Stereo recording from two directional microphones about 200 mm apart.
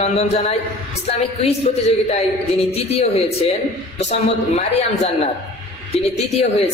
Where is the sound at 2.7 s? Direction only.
30° left (ahead or behind).